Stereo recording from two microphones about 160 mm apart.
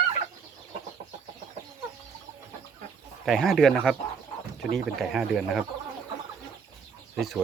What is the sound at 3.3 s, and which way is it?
Speech, centre (ahead or behind).